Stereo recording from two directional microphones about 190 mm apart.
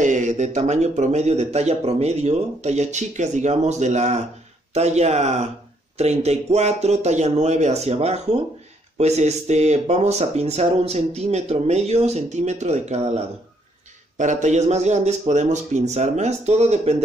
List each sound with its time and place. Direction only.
0.0 s speech: 40° right (ahead or behind)